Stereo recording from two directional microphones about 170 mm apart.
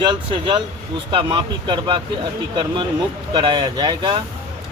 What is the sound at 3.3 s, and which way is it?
Speech, 30° right (ahead or behind).